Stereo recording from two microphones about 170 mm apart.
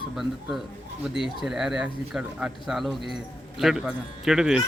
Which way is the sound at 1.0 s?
5° right (ahead or behind).